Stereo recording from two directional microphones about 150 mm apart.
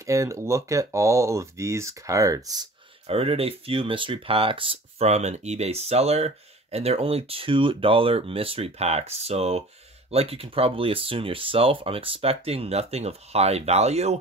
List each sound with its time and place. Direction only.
0.0 s speech: 20° right (ahead or behind)
3.1 s speech: 40° right (ahead or behind)